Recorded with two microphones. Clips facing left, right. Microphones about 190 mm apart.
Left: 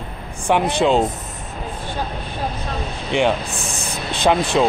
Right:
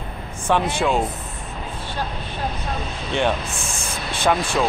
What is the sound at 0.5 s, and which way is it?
Speech, 15° left (ahead or behind).